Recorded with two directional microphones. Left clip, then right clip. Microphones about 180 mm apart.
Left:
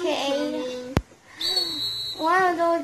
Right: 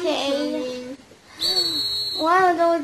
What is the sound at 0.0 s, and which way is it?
Music, 10° left (ahead or behind).